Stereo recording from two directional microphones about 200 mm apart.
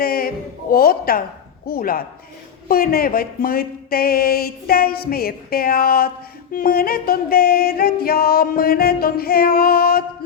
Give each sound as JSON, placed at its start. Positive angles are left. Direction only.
{"t": 0.0, "sound": "speech", "side_deg": 50}
{"t": 1.6, "sound": "singing", "side_deg": 50}